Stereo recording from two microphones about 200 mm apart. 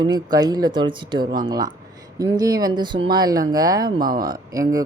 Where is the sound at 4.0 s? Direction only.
45° right (ahead or behind).